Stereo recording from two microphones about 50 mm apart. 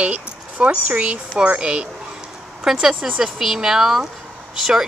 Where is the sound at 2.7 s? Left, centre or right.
Centre.